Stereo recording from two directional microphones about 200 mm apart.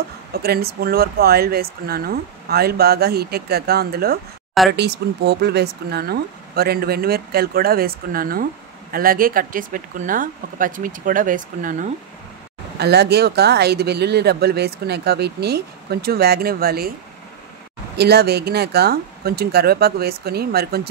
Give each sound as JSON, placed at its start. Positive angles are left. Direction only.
{"t": 0.3, "sound": "speech", "side_deg": -50}
{"t": 12.7, "sound": "speech", "side_deg": -55}
{"t": 17.9, "sound": "speech", "side_deg": -55}